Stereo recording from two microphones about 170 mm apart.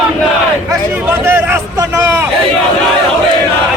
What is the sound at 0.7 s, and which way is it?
A man's voice, 15° right (ahead or behind).